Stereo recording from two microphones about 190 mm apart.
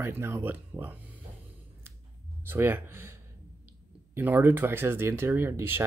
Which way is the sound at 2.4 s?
10° right (ahead or behind).